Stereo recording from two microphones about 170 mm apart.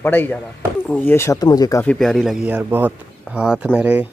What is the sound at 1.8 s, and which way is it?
A man's voice, centre (ahead or behind).